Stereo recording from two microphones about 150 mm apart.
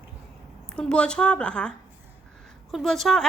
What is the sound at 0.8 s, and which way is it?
Speech, 5° left (ahead or behind).